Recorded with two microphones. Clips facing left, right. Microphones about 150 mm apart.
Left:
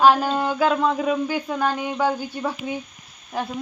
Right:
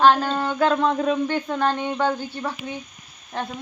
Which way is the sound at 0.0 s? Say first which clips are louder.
Left 1 dB; 10° left (ahead or behind).